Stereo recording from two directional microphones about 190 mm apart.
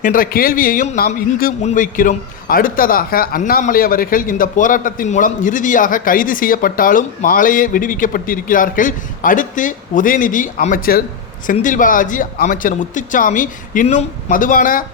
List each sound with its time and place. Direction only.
0.0 s a man's voice: 45° left (ahead or behind)